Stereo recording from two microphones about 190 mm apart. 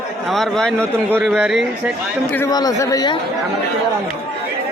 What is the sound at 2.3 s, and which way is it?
Speech, 15° left (ahead or behind).